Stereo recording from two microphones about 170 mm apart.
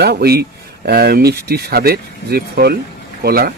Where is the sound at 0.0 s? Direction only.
70° right (ahead or behind).